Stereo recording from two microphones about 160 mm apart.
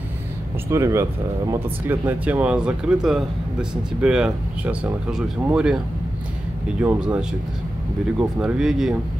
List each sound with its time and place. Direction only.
0.7 s speech: 15° right (ahead or behind)
6.8 s speech: 10° right (ahead or behind)